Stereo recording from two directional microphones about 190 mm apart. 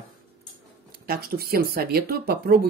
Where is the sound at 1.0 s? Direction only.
50° right (ahead or behind).